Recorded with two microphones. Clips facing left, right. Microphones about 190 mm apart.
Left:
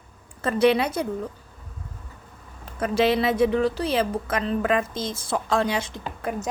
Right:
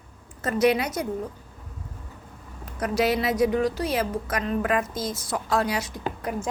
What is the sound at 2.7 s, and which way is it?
A woman's voice, 25° left (ahead or behind).